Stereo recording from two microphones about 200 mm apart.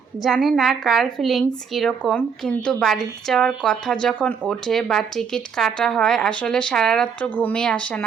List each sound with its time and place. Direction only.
0.2 s speech: centre (ahead or behind)